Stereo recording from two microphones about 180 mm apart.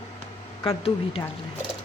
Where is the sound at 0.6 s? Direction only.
35° left (ahead or behind).